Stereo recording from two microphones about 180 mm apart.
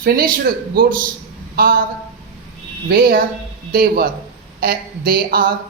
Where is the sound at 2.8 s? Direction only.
55° right (ahead or behind).